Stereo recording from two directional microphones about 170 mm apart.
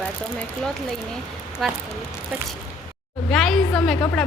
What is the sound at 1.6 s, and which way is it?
Speech, centre (ahead or behind).